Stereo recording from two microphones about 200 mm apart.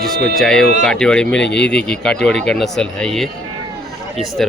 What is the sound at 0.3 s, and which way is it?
Speech, centre (ahead or behind).